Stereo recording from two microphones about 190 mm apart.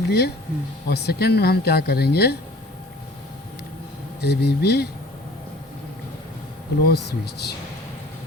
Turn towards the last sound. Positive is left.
turn(degrees=60)  # may be behind; listen again after turning